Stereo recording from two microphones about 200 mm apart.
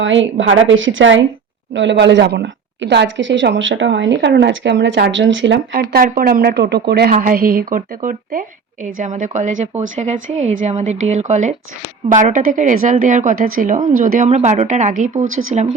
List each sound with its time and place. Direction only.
0.0 s a woman's voice: 70° right (ahead or behind)
5.7 s a woman's voice: 45° right (ahead or behind)
15.2 s speech: 90° right